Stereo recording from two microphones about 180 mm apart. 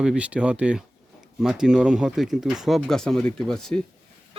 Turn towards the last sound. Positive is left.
turn(degrees=5)  # may be behind; listen again after turning